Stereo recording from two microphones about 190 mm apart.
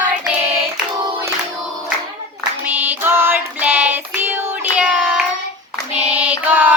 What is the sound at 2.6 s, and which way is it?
Child singing, 10° right (ahead or behind).